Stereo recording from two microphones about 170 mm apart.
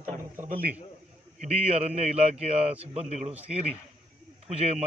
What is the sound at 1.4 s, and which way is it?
A man's voice, 40° right (ahead or behind).